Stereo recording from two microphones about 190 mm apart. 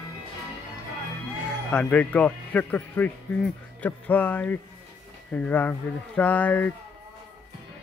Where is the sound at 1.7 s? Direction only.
5° left (ahead or behind).